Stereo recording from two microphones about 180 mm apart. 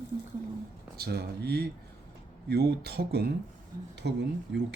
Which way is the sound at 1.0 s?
60° right (ahead or behind).